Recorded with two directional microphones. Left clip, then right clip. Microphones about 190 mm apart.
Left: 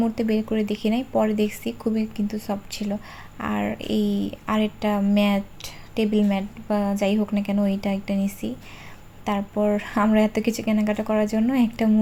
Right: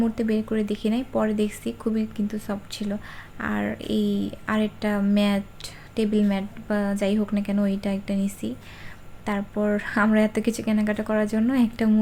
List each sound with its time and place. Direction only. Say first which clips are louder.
0.0 s speech: left 1 dB; 10° left (ahead or behind)